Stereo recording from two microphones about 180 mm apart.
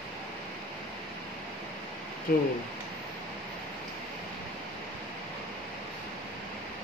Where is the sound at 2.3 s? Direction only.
55° left (ahead or behind).